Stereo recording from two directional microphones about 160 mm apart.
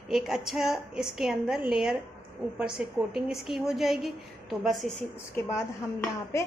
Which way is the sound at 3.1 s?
5° right (ahead or behind).